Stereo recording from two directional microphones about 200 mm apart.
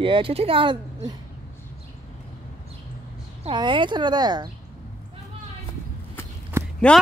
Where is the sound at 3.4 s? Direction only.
25° right (ahead or behind).